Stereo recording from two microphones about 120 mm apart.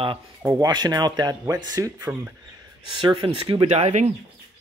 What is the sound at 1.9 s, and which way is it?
Speech, 20° right (ahead or behind).